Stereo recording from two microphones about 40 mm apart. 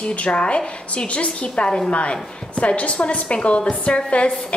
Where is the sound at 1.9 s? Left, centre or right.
Left.